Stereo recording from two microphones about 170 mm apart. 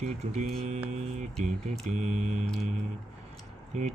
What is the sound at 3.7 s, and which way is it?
Speech, 45° right (ahead or behind).